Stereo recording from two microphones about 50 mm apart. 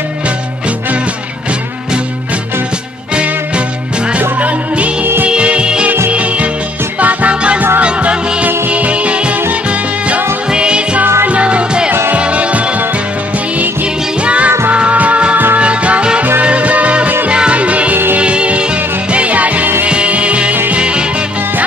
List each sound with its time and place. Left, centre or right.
4.4 s music: right
14.2 s music: right
14.7 s music of bollywood: right
15.6 s music: right